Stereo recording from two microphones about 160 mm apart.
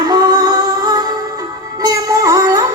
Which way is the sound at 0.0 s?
25° right (ahead or behind).